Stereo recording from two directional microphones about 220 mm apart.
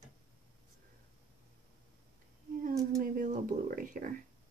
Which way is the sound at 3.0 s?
40° right (ahead or behind).